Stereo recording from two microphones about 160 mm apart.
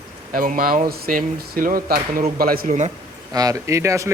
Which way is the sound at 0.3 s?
60° right (ahead or behind).